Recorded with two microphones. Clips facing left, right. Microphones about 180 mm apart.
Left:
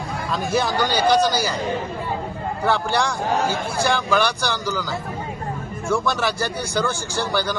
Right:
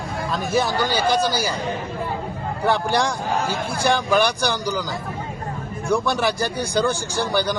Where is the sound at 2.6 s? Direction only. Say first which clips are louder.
Right 1 dB; 15° right (ahead or behind).